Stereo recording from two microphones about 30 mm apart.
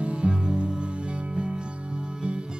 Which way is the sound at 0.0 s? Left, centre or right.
Right.